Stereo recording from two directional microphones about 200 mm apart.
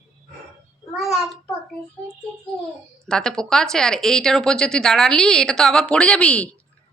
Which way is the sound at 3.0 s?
5° left (ahead or behind).